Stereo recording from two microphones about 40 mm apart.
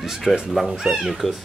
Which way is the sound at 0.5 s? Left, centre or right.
Centre.